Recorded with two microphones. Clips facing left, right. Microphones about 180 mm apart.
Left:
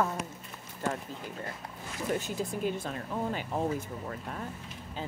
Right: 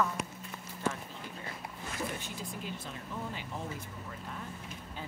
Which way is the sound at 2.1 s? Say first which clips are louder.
Left 8 dB; 50° left (ahead or behind).